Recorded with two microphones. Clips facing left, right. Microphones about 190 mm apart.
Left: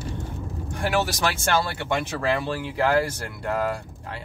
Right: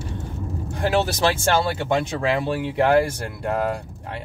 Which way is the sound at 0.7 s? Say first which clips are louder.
Right 3 dB; 25° right (ahead or behind).